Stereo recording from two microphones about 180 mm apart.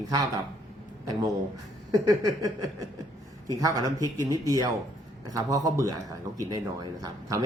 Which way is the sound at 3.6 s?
20° right (ahead or behind).